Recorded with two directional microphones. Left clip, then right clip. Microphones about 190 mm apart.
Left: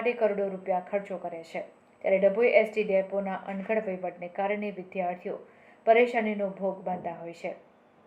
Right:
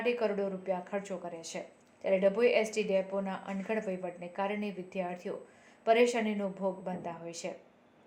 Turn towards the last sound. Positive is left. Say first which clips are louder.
# left 4 dB
turn(degrees=-40)  # may be behind; listen again after turning